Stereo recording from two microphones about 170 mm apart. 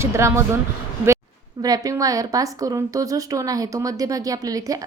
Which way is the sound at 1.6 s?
20° right (ahead or behind).